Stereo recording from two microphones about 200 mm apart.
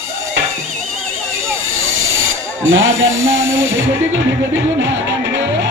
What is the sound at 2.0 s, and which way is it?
Speech, 80° right.